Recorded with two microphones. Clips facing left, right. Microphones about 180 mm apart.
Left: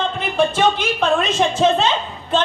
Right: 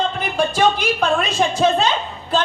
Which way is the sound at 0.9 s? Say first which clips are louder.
Left 1 dB; 10° right (ahead or behind).